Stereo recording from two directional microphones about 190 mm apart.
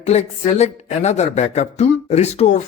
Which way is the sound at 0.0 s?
35° left (ahead or behind).